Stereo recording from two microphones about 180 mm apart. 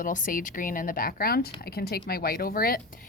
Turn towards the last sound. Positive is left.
turn(degrees=50)  # may be behind; listen again after turning